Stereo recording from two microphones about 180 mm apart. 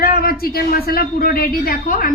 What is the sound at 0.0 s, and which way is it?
Speech, 55° left (ahead or behind).